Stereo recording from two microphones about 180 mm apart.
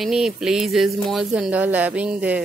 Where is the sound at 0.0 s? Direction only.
Centre (ahead or behind).